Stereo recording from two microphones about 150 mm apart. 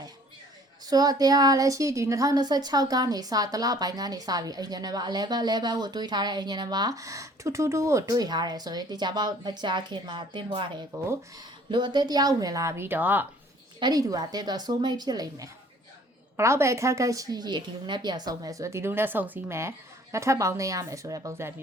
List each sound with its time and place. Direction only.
0.9 s a woman's voice: 25° right (ahead or behind)
13.7 s a woman's voice: 30° right (ahead or behind)